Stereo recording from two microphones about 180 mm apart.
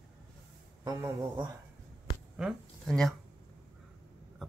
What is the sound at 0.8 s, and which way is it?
Speech, 20° right (ahead or behind).